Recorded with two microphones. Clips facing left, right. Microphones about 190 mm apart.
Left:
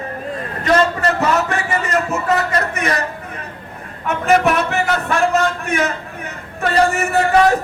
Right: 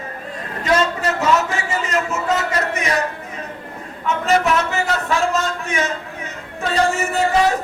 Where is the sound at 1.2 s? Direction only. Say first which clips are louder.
Left 1 dB; 60° left (ahead or behind).